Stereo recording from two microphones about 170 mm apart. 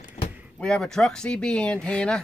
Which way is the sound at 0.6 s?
5° left (ahead or behind).